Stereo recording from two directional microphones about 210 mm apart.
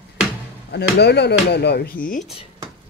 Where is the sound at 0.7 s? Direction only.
55° left (ahead or behind).